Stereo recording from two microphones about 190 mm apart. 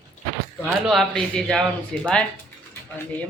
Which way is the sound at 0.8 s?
Centre (ahead or behind).